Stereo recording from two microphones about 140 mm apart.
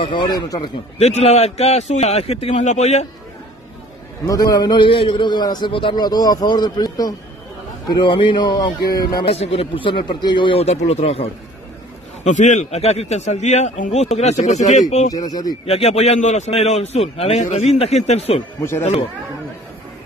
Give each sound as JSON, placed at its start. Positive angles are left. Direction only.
{"t": 0.0, "sound": "a man's voice", "side_deg": 30}
{"t": 0.9, "sound": "a man's voice", "side_deg": 50}
{"t": 4.3, "sound": "a man's voice", "side_deg": 25}
{"t": 9.2, "sound": "a man's voice", "side_deg": 45}
{"t": 12.2, "sound": "a man's voice", "side_deg": 60}
{"t": 15.0, "sound": "speech", "side_deg": 30}
{"t": 15.6, "sound": "a man's voice", "side_deg": 45}
{"t": 18.6, "sound": "speech", "side_deg": 15}